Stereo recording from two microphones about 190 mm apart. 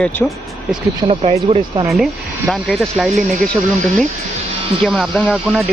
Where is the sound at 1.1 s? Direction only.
30° right (ahead or behind).